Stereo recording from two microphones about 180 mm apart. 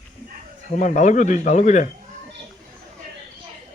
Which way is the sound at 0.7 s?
45° left (ahead or behind).